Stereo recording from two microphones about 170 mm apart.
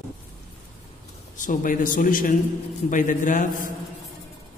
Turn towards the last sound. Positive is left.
turn(degrees=50)  # may be behind; listen again after turning